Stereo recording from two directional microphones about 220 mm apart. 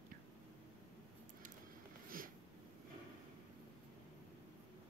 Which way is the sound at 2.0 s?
40° right (ahead or behind).